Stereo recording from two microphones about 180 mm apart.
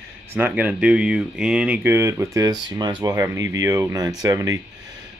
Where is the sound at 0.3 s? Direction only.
10° right (ahead or behind).